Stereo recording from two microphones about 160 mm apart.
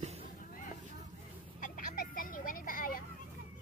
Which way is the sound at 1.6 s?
60° left (ahead or behind).